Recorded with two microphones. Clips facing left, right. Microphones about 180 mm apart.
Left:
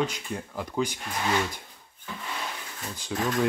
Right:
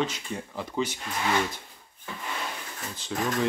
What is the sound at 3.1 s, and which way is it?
Speech, 5° left (ahead or behind).